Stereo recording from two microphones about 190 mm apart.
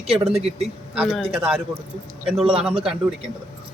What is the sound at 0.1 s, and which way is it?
Speech, 30° right (ahead or behind).